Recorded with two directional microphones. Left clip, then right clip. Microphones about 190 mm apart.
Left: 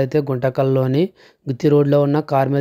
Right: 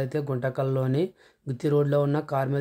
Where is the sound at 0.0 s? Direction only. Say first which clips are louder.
Left 10 dB; 35° left (ahead or behind).